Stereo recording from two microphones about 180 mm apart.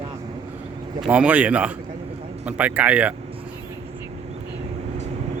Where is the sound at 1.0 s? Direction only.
5° right (ahead or behind).